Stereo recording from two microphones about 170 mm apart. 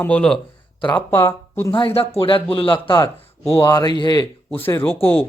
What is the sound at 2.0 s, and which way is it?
Speech, 35° left (ahead or behind).